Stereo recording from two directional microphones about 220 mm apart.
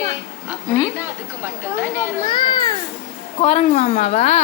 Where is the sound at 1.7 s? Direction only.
10° right (ahead or behind).